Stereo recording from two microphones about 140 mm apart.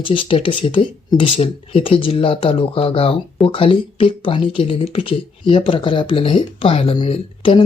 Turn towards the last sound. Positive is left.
turn(degrees=40)  # may be behind; listen again after turning